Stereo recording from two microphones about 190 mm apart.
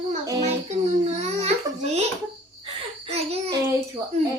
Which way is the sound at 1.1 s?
35° right (ahead or behind).